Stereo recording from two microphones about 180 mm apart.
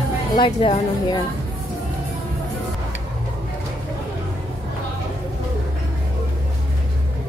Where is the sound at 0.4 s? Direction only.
30° left (ahead or behind).